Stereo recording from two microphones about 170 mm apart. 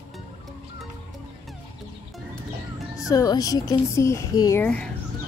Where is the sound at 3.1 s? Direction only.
20° left (ahead or behind).